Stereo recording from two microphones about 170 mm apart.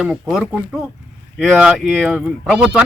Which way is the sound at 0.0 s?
5° right (ahead or behind).